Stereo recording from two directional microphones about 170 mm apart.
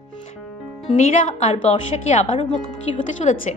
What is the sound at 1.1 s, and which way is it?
Speech, 45° left (ahead or behind).